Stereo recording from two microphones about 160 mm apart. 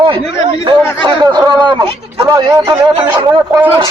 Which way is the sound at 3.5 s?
15° right (ahead or behind).